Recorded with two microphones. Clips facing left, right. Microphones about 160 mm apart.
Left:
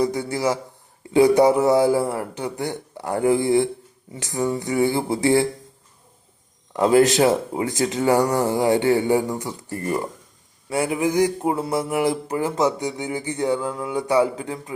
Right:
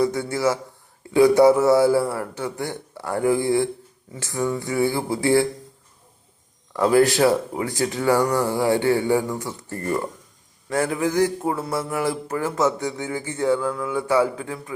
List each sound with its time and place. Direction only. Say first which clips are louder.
0.0 s a man's voice: right 1 dB; 20° left (ahead or behind)
6.7 s speech: left 1 dB; 20° left (ahead or behind)
10.7 s mantra: left 1 dB; 10° left (ahead or behind)